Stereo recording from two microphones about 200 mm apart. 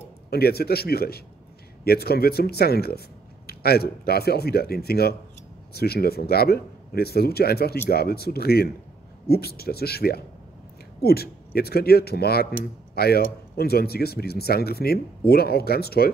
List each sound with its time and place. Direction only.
0.3 s speech: 50° left (ahead or behind)